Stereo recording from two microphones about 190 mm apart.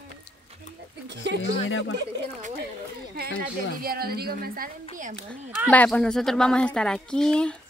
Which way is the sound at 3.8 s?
55° right (ahead or behind).